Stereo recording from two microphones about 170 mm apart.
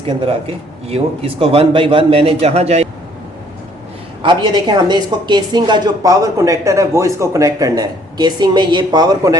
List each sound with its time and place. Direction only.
0.0 s a man's voice: 35° right (ahead or behind)
4.2 s a woman's voice: 25° right (ahead or behind)